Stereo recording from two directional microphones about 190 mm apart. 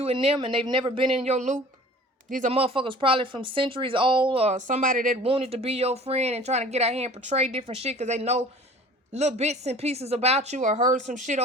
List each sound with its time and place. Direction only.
0.0 s speech: 30° right (ahead or behind)
5.2 s speech: 30° right (ahead or behind)